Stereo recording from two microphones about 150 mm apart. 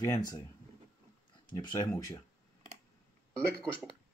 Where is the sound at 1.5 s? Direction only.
25° left (ahead or behind).